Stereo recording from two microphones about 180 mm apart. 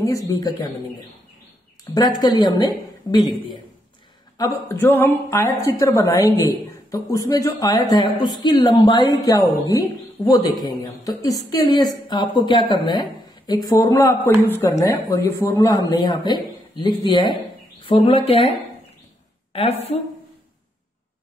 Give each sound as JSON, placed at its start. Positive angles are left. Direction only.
{"t": 0.0, "sound": "a woman's voice", "side_deg": 20}
{"t": 2.0, "sound": "a woman's voice", "side_deg": 20}
{"t": 4.6, "sound": "a woman's voice", "side_deg": 10}
{"t": 19.5, "sound": "speech", "side_deg": 35}